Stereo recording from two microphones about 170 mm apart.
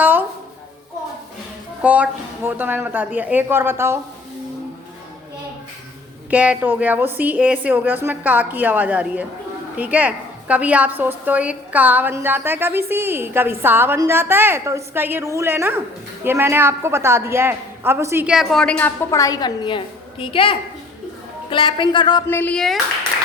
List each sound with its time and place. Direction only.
0.0 s a sound: 10° right (ahead or behind)
1.8 s a woman's voice: 10° right (ahead or behind)
6.3 s a woman's voice: 10° right (ahead or behind)
19.1 s a woman's voice: 20° left (ahead or behind)
22.3 s speech: 10° left (ahead or behind)